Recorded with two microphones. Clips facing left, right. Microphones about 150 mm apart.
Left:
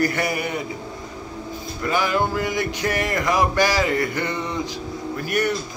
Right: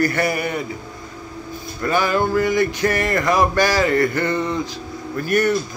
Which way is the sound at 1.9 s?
15° left (ahead or behind).